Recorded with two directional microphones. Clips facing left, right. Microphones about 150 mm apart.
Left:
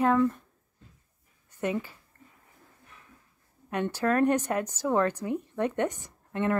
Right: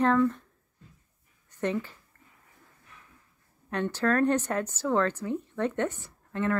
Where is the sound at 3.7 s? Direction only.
10° left (ahead or behind).